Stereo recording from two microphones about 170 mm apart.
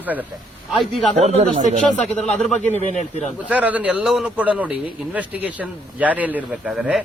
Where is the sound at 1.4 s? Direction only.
40° right (ahead or behind).